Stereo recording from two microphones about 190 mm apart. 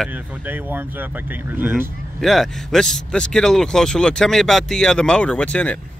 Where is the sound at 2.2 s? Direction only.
Centre (ahead or behind).